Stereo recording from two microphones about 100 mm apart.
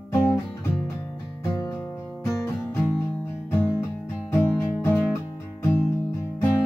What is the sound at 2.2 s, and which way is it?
Music, 30° left (ahead or behind).